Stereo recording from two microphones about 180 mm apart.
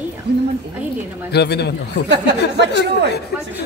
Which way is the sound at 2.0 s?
75° right (ahead or behind).